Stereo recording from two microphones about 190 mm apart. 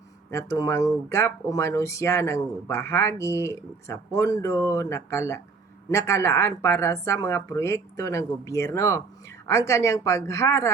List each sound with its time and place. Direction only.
0.3 s speech: 15° left (ahead or behind)